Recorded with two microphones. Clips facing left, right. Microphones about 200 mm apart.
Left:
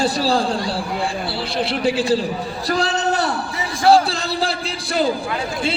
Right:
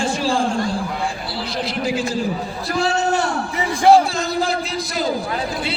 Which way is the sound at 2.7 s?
35° left (ahead or behind).